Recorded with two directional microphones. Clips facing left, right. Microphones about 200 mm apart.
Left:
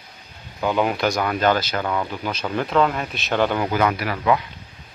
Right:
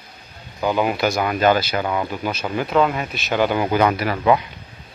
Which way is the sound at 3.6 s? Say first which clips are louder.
Right 3 dB; 30° right (ahead or behind).